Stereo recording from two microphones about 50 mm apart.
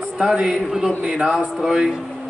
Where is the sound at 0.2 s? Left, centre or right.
Centre.